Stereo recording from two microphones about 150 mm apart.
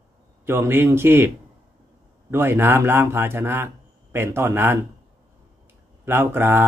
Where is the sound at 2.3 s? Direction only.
15° right (ahead or behind).